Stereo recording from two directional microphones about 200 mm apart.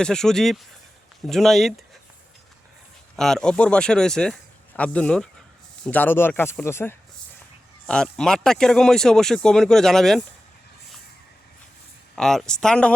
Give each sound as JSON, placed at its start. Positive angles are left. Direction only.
{"t": 0.0, "sound": "speech", "side_deg": 5}
{"t": 3.2, "sound": "speech", "side_deg": 0}
{"t": 12.1, "sound": "speech", "side_deg": 5}